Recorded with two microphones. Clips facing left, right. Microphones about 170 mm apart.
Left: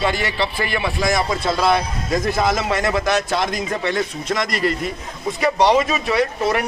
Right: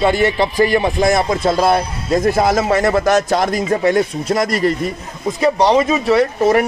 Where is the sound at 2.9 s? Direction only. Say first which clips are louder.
Right 5 dB; 40° right (ahead or behind).